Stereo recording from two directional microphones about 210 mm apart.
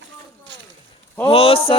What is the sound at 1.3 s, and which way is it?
Speech, 25° left (ahead or behind).